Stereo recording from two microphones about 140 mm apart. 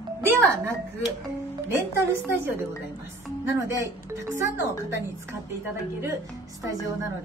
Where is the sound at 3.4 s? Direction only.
20° right (ahead or behind).